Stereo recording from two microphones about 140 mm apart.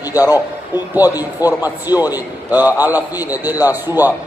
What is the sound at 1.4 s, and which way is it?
A man's voice, 10° right (ahead or behind).